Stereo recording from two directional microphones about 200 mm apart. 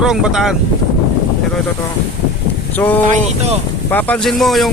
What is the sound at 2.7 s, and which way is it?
Speech, 10° left (ahead or behind).